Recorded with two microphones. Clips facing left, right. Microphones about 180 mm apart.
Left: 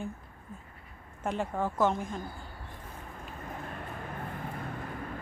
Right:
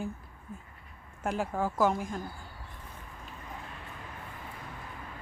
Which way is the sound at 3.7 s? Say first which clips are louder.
Left 5 dB; 50° left (ahead or behind).